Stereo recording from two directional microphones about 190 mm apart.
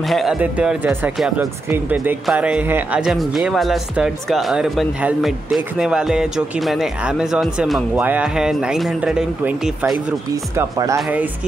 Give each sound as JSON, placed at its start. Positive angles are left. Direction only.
{"t": 0.1, "sound": "speech", "side_deg": 0}